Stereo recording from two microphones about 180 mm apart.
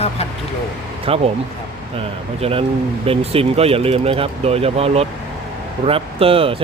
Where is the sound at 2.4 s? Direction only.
30° right (ahead or behind).